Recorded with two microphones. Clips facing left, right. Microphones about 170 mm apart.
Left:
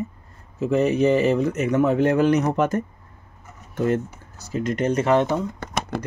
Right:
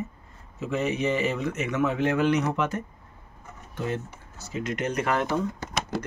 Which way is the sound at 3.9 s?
40° left (ahead or behind).